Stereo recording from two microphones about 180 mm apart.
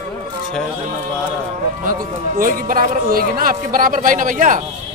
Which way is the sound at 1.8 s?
50° right (ahead or behind).